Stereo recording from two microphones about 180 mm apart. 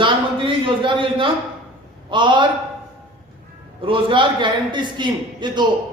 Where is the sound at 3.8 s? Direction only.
30° right (ahead or behind).